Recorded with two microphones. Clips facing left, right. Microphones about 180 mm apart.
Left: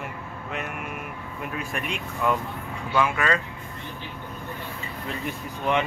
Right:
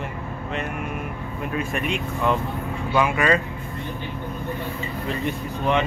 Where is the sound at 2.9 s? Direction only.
15° right (ahead or behind).